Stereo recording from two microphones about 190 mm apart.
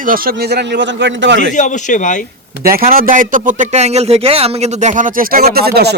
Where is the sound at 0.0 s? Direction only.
50° right (ahead or behind); by 1.4 s 70° right (ahead or behind).